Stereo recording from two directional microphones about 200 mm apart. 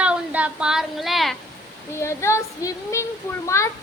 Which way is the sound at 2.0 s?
15° left (ahead or behind).